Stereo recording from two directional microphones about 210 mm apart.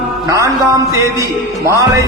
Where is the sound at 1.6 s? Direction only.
15° right (ahead or behind).